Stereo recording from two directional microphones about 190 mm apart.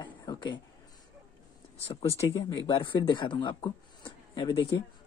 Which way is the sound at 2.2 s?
25° left (ahead or behind).